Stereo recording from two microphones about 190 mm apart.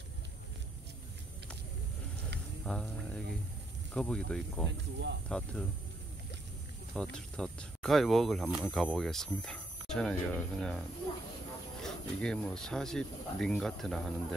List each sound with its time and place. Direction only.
2.6 s a sound: 5° left (ahead or behind)
3.9 s speech: 5° left (ahead or behind)
7.0 s speech: 5° left (ahead or behind)
11.8 s speech: 5° left (ahead or behind)